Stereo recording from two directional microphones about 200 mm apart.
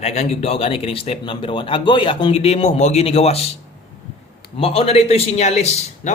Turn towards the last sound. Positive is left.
turn(degrees=35)  # may be behind; listen again after turning